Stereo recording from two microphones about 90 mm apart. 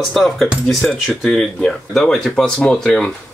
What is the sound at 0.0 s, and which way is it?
Speech, centre (ahead or behind).